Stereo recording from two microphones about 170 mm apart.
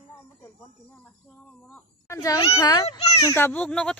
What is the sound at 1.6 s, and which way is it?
A woman's voice, 10° left (ahead or behind).